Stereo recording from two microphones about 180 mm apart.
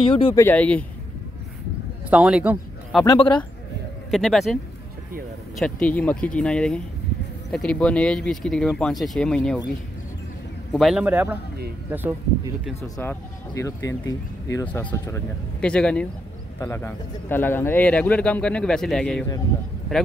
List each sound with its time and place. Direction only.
0.0 s speech: 30° left (ahead or behind)
0.4 s speech: 10° left (ahead or behind)
2.0 s a sound: 5° right (ahead or behind)
3.1 s speech: 25° left (ahead or behind)
4.1 s speech: centre (ahead or behind)
5.6 s speech: 5° left (ahead or behind)
10.7 s speech: centre (ahead or behind)
12.8 s speech: 20° left (ahead or behind)
14.7 s speech: 10° left (ahead or behind)